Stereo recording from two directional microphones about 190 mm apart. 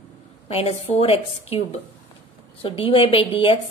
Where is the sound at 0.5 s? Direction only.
30° left (ahead or behind).